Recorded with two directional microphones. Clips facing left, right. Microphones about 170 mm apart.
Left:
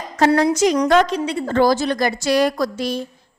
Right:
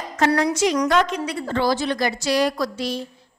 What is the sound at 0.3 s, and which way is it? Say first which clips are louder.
Speech: left 4 dB; 25° left (ahead or behind).